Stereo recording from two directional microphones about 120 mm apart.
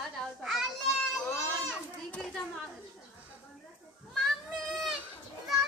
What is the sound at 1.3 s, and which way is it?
Children playing, 20° left (ahead or behind).